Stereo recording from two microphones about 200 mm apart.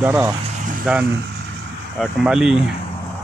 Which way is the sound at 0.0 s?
10° right (ahead or behind).